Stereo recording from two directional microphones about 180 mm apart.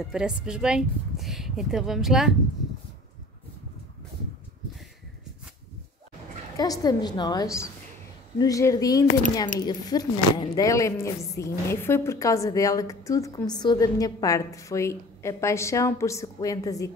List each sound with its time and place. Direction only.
0.0 s speech: 5° right (ahead or behind)
6.5 s a woman's voice: 20° left (ahead or behind)